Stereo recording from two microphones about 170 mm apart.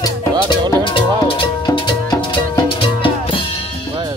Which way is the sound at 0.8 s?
30° left (ahead or behind).